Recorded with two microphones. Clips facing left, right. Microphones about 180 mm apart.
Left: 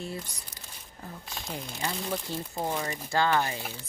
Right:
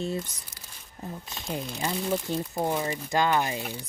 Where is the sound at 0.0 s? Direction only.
25° right (ahead or behind).